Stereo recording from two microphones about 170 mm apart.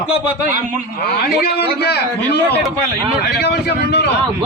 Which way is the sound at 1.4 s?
70° left (ahead or behind).